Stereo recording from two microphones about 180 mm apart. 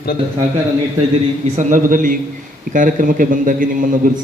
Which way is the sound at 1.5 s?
50° right (ahead or behind).